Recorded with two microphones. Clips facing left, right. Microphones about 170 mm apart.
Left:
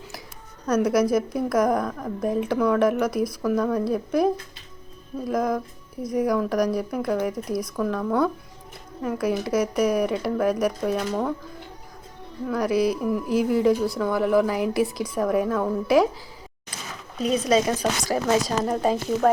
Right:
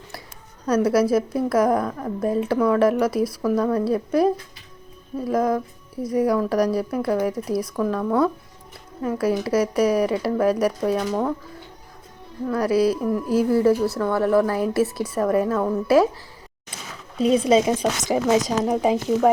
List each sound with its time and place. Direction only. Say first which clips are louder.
0.6 s a woman's voice: right 2 dB; 10° right (ahead or behind)
12.5 s a woman's voice: right 3 dB; 5° right (ahead or behind)
17.2 s speech: right 4 dB; 30° right (ahead or behind)